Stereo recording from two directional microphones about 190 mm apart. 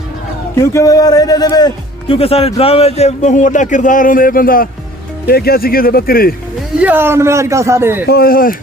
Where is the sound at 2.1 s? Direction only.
30° left (ahead or behind); by 6.4 s 50° left (ahead or behind).